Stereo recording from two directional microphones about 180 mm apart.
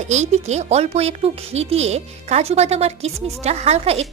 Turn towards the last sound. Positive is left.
turn(degrees=-35)  # may be behind; listen again after turning